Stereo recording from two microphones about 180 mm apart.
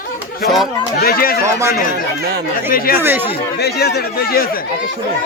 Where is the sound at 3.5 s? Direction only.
60° left (ahead or behind).